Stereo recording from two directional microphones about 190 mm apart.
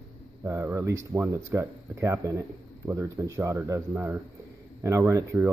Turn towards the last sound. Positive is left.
turn(degrees=-10)  # may be behind; listen again after turning